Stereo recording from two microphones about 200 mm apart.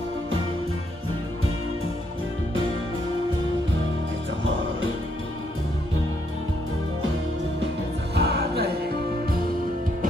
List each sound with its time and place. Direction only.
8.1 s music: 55° right (ahead or behind)